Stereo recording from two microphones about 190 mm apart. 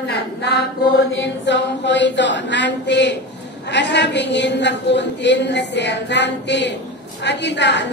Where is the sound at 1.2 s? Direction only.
65° left (ahead or behind).